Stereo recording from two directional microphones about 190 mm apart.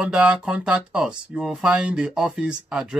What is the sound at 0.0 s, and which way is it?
Speech, 5° right (ahead or behind).